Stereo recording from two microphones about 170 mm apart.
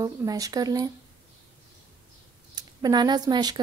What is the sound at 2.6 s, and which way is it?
A woman's voice, 25° right (ahead or behind).